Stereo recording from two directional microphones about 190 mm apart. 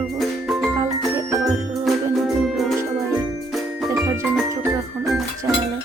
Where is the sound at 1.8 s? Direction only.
Centre (ahead or behind).